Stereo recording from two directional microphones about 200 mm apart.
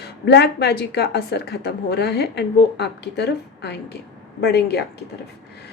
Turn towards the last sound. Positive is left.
turn(degrees=55)  # may be behind; listen again after turning